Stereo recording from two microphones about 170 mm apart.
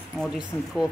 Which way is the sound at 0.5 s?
15° left (ahead or behind).